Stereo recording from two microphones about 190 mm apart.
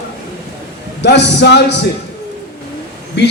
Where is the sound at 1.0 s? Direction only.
65° left (ahead or behind).